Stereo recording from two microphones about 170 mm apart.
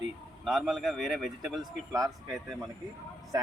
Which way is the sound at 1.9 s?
20° right (ahead or behind).